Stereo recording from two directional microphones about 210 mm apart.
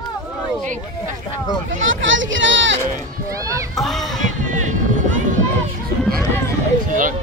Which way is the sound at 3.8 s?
Centre (ahead or behind).